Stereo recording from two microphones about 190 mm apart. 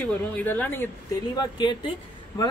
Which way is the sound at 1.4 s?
25° left (ahead or behind).